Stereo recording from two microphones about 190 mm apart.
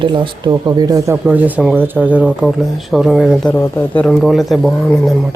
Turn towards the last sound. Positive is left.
turn(degrees=0)  # may be behind; listen again after turning